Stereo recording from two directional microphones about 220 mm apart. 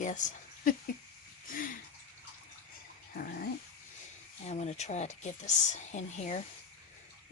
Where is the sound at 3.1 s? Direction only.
40° left (ahead or behind).